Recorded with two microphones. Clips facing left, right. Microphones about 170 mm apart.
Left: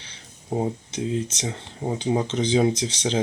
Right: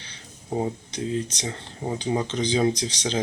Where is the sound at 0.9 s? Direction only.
25° left (ahead or behind).